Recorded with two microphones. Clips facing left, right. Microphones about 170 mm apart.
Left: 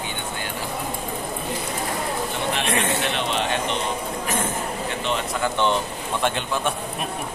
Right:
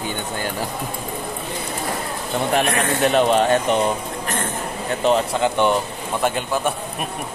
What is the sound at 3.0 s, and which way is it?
Speech, 45° right (ahead or behind).